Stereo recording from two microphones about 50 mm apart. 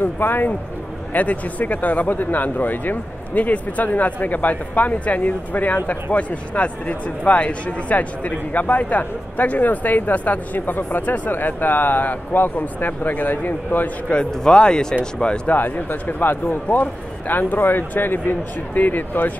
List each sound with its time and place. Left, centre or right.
0.0 s speech: left
1.1 s speech: left
14.3 s speech: centre
15.4 s speech: left